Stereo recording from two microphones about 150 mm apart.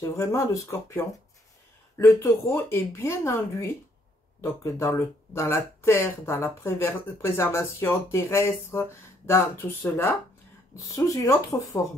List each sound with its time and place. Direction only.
0.0 s speech: 20° left (ahead or behind)